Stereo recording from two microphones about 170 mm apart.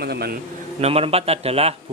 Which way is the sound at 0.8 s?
35° right (ahead or behind).